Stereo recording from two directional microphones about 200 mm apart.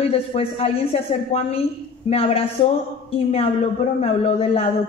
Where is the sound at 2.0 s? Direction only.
30° left (ahead or behind).